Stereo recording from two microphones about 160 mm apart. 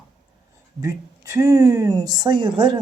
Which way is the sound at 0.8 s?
20° right (ahead or behind).